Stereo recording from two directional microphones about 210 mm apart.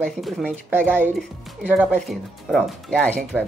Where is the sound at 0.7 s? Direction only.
10° right (ahead or behind).